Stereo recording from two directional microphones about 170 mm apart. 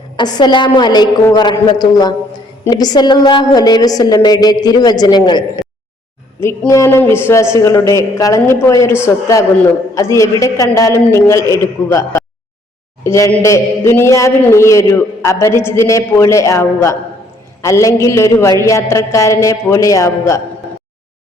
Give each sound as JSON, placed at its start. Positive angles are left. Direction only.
{"t": 0.2, "sound": "a woman's voice", "side_deg": 25}
{"t": 6.4, "sound": "a man's voice", "side_deg": 15}